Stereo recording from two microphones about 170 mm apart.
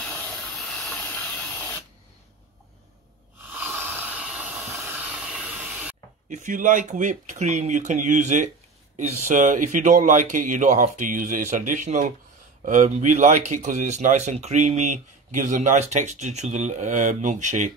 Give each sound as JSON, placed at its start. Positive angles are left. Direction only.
{"t": 0.0, "sound": "a sound", "side_deg": 5}
{"t": 3.5, "sound": "hiss", "side_deg": -10}
{"t": 6.3, "sound": "speech", "side_deg": -50}